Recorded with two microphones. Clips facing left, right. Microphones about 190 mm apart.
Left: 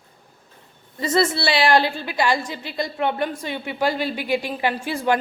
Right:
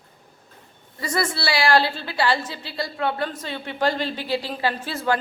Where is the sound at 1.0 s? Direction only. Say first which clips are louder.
Left 5 dB; 25° left (ahead or behind).